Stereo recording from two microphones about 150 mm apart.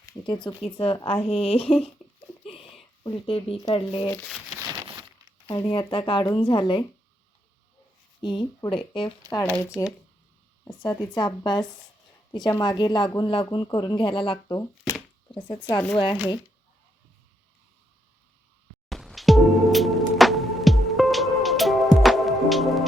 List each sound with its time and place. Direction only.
0.0 s a sound: 25° left (ahead or behind)
0.4 s a woman's voice: 35° left (ahead or behind)
2.4 s a sound: 40° left (ahead or behind)
3.0 s a woman's voice: 35° left (ahead or behind)
4.7 s a sound: 30° right (ahead or behind)
5.5 s a woman's voice: 30° left (ahead or behind)
8.2 s a woman's voice: 30° left (ahead or behind)
14.4 s speech: 20° left (ahead or behind)
15.3 s speech: 30° left (ahead or behind)
18.9 s music: centre (ahead or behind)